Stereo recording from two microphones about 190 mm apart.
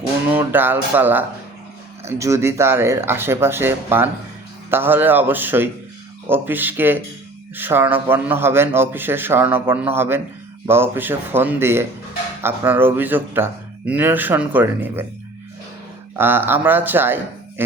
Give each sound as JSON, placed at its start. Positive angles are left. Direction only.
{"t": 0.3, "sound": "a man's voice", "side_deg": -10}
{"t": 16.1, "sound": "a man's voice", "side_deg": -10}